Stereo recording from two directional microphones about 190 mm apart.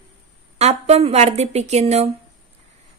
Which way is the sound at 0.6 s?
35° right (ahead or behind).